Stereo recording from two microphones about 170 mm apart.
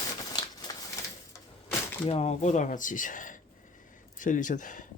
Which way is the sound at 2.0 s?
35° left (ahead or behind).